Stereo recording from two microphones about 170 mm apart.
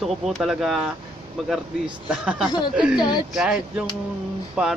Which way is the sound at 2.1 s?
5° right (ahead or behind).